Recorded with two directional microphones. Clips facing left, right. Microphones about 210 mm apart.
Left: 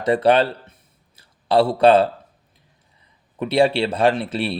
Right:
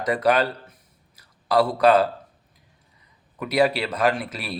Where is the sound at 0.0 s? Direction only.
30° left (ahead or behind).